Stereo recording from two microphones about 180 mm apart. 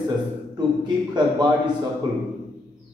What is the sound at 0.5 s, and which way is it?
Speech, 25° right (ahead or behind).